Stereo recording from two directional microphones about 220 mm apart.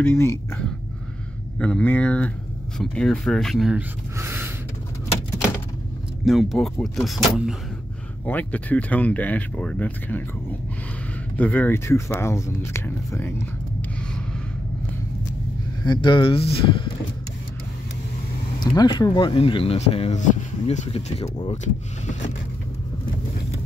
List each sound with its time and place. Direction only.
0.0 s speech: 10° left (ahead or behind); by 4.5 s 10° right (ahead or behind)
6.2 s speech: centre (ahead or behind)
11.3 s speech: 5° left (ahead or behind)
15.8 s speech: 20° left (ahead or behind)
18.6 s speech: 20° left (ahead or behind)